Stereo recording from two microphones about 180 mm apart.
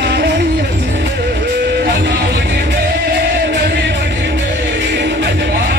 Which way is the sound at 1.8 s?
65° right (ahead or behind).